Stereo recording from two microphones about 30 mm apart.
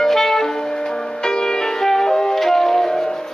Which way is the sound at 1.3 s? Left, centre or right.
Left.